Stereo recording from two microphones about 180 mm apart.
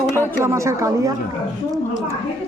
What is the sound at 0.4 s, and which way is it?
Speech, 15° right (ahead or behind).